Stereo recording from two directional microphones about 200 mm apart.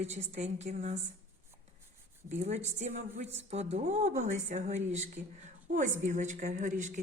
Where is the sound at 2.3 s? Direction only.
35° right (ahead or behind).